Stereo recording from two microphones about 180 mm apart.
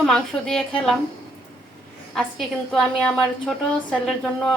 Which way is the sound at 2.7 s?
5° left (ahead or behind).